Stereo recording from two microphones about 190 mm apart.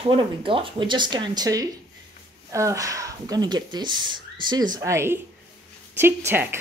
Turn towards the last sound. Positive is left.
turn(degrees=-10)  # may be behind; listen again after turning